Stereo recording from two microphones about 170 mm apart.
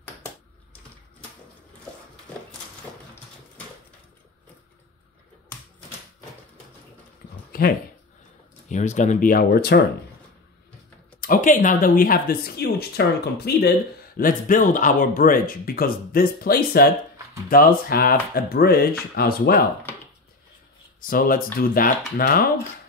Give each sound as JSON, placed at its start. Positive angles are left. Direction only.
{"t": 7.5, "sound": "a sound", "side_deg": 60}
{"t": 8.6, "sound": "speech", "side_deg": 45}
{"t": 11.1, "sound": "speech", "side_deg": 50}
{"t": 21.1, "sound": "speech", "side_deg": 55}